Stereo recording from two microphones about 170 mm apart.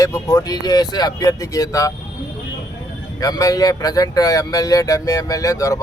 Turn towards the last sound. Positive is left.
turn(degrees=20)  # may be behind; listen again after turning